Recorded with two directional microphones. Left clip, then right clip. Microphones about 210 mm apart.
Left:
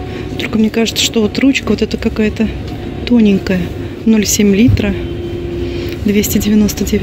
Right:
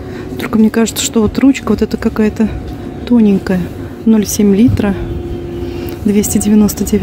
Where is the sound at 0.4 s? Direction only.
20° right (ahead or behind).